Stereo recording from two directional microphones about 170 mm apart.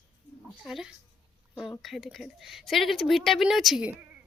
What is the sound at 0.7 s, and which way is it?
Speech, centre (ahead or behind).